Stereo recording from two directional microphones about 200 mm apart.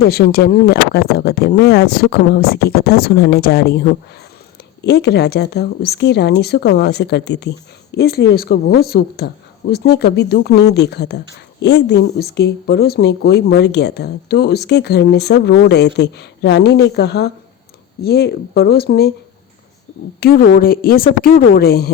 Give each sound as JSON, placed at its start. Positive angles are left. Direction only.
{"t": 0.0, "sound": "speech", "side_deg": 50}
{"t": 20.1, "sound": "speech", "side_deg": 50}